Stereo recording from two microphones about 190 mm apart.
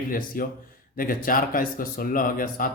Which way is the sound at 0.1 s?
50° left (ahead or behind).